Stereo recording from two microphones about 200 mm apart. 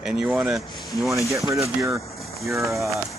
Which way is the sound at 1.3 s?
15° right (ahead or behind).